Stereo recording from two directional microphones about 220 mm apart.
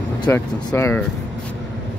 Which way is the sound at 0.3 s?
10° left (ahead or behind).